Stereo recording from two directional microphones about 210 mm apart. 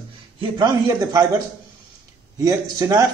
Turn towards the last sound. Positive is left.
turn(degrees=-15)  # may be behind; listen again after turning